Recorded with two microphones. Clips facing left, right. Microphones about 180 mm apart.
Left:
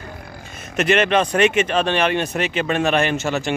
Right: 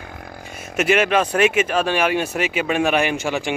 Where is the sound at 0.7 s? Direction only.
5° right (ahead or behind).